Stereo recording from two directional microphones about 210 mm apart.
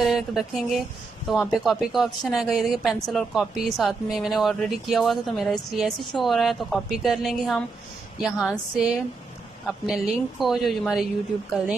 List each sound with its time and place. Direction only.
0.0 s a woman's voice: centre (ahead or behind)